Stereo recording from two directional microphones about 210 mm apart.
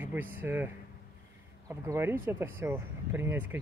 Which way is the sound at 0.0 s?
10° right (ahead or behind).